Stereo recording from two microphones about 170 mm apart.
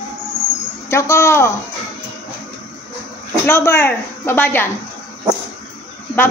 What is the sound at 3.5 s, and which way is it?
A woman's voice, 15° left (ahead or behind).